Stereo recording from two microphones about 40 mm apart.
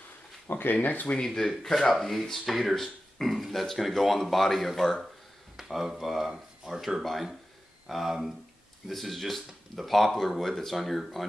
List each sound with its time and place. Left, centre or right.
0.5 s speech: left
0.8 s speech: left
1.6 s speech: centre
5.6 s a sound: centre
5.9 s speech: centre